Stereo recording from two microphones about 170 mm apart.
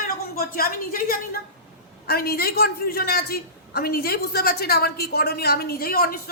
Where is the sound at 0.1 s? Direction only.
60° left (ahead or behind).